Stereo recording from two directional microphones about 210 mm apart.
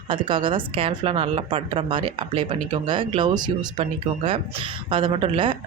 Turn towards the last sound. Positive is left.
turn(degrees=-25)  # may be behind; listen again after turning